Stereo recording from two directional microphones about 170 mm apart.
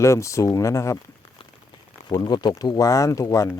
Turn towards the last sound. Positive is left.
turn(degrees=20)  # may be behind; listen again after turning